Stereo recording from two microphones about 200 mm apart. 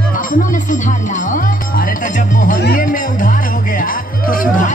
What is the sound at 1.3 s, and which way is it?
Music, 45° left (ahead or behind).